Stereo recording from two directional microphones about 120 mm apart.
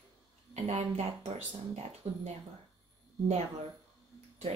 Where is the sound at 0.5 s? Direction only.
60° right (ahead or behind).